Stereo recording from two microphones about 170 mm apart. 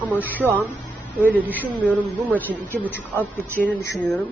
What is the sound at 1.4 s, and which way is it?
Speech, 10° left (ahead or behind).